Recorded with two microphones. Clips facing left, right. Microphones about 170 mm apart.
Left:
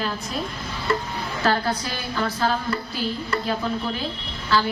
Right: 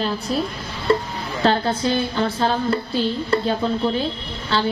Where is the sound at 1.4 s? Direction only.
25° right (ahead or behind).